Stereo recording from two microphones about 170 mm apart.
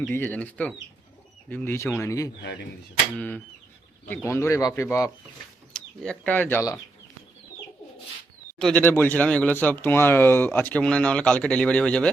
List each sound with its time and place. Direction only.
0.1 s speech: 10° left (ahead or behind)
2.4 s speech: 90° left
3.2 s speech: 10° left (ahead or behind)
5.7 s speech: 5° left (ahead or behind)
8.5 s speech: 5° left (ahead or behind)